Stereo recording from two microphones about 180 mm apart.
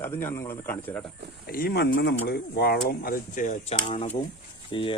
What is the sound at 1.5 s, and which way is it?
Speech, 60° left (ahead or behind).